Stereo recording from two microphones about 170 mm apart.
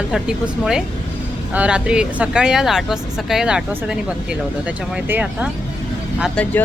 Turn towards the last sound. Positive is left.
turn(degrees=10)  # may be behind; listen again after turning